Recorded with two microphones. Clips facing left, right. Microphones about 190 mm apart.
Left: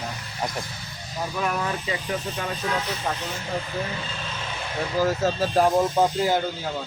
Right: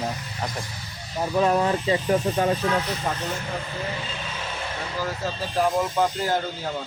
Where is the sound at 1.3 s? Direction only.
25° right (ahead or behind).